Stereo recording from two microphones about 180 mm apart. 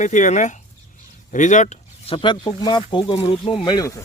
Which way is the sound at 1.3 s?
45° left (ahead or behind).